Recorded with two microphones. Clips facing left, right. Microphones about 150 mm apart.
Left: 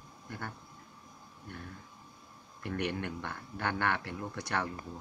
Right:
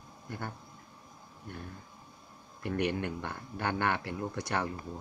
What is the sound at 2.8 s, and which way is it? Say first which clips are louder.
Speech: right 3 dB; 15° right (ahead or behind).